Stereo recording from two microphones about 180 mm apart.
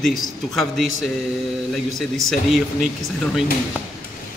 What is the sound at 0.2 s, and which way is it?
Speech, centre (ahead or behind).